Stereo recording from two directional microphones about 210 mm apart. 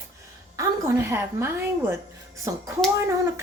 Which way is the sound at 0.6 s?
10° right (ahead or behind).